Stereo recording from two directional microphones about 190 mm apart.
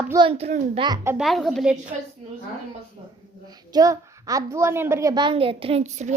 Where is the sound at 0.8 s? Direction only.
20° right (ahead or behind).